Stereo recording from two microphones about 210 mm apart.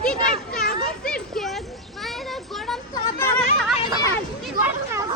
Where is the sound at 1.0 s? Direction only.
5° left (ahead or behind).